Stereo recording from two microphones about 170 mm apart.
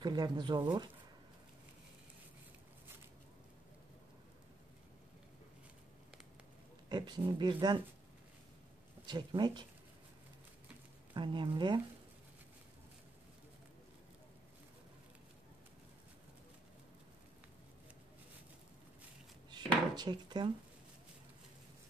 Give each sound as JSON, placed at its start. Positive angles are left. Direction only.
{"t": 0.0, "sound": "speech", "side_deg": -25}
{"t": 6.9, "sound": "speech", "side_deg": -25}
{"t": 9.0, "sound": "speech", "side_deg": -25}
{"t": 11.1, "sound": "speech", "side_deg": -30}
{"t": 19.5, "sound": "chopping", "side_deg": -25}